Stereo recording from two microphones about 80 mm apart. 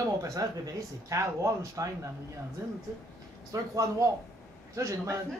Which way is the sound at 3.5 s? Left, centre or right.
Right.